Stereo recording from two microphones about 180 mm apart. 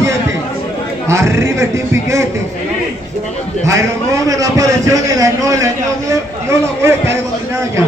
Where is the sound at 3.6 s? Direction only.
15° right (ahead or behind).